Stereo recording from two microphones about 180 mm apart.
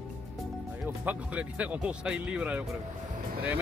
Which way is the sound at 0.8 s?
10° right (ahead or behind).